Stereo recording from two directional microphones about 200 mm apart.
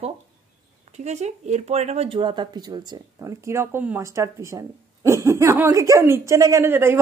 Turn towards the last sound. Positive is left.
turn(degrees=-10)  # may be behind; listen again after turning